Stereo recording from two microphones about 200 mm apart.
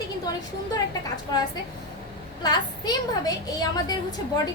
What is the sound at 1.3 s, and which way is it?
A woman's voice, 20° left (ahead or behind).